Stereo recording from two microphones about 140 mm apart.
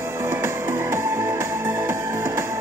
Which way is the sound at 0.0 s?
15° right (ahead or behind).